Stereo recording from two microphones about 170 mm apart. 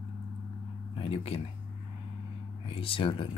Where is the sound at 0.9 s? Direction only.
35° left (ahead or behind).